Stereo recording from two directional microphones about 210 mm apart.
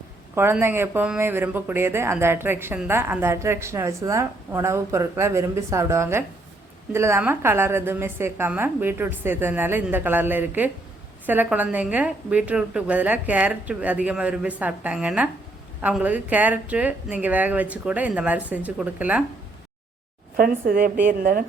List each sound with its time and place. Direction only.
0.3 s speech: 10° right (ahead or behind)
20.3 s speech: 45° right (ahead or behind)